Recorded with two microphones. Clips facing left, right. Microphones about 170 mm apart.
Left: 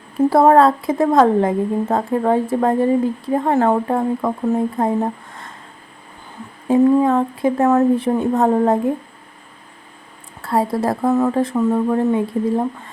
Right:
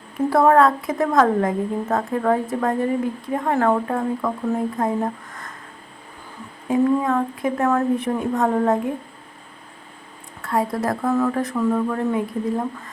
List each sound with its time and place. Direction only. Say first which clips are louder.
0.3 s a woman's voice: left 3 dB; 30° left (ahead or behind)
6.7 s a woman's voice: left 5 dB; 30° left (ahead or behind)
10.4 s a woman's voice: left 4 dB; 30° left (ahead or behind)